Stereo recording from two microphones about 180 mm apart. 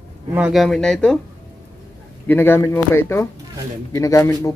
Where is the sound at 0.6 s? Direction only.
5° left (ahead or behind).